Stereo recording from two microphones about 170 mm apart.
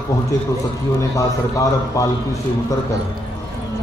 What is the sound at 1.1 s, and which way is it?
Speech, 20° left (ahead or behind).